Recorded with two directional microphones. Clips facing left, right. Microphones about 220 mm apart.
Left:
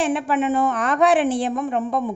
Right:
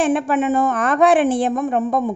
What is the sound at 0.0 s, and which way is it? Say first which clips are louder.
Speech: right 3 dB; 50° right (ahead or behind).